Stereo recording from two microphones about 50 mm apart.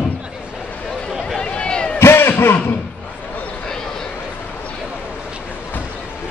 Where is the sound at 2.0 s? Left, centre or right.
Left.